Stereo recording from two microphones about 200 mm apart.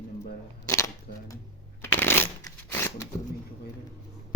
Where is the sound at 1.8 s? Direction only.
10° left (ahead or behind).